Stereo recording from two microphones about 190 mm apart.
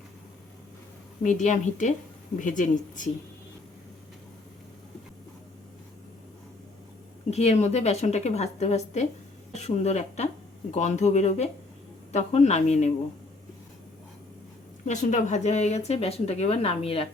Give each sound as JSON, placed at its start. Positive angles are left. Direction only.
{"t": 1.2, "sound": "speech", "side_deg": 40}
{"t": 7.3, "sound": "speech", "side_deg": 35}
{"t": 14.8, "sound": "speech", "side_deg": 40}